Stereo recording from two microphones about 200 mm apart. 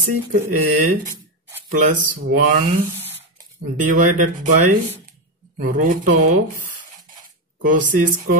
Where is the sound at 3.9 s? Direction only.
40° right (ahead or behind).